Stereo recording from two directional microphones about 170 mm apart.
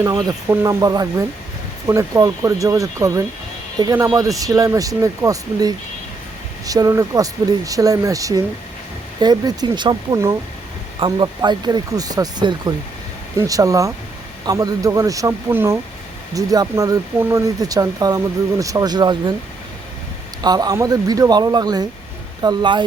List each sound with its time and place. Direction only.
0.0 s speech: 25° right (ahead or behind)
20.4 s speech: 25° right (ahead or behind)